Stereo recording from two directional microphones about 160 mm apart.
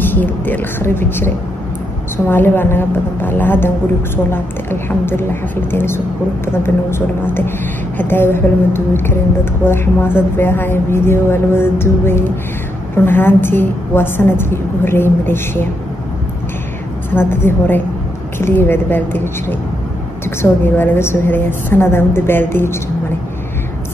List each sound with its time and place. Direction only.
0.0 s speech: 10° left (ahead or behind)
8.0 s speech: 15° left (ahead or behind)
17.1 s speech: 15° left (ahead or behind)